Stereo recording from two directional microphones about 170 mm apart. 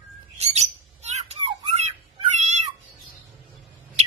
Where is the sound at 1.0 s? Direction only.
40° right (ahead or behind).